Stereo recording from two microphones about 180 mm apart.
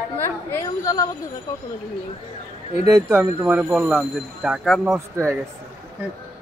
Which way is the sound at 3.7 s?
Centre (ahead or behind).